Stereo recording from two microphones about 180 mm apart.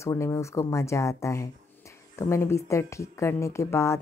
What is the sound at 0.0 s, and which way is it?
Speech, 15° left (ahead or behind).